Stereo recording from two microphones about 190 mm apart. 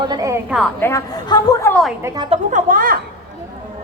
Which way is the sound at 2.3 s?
40° right (ahead or behind).